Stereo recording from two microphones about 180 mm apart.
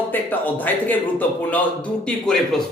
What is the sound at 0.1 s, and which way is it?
Speech, 10° left (ahead or behind).